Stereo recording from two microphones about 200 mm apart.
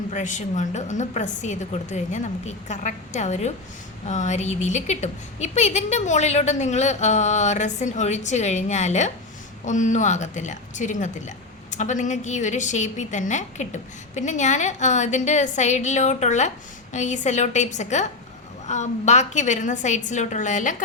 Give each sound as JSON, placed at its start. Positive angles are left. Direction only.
{"t": 0.1, "sound": "a woman's voice", "side_deg": 35}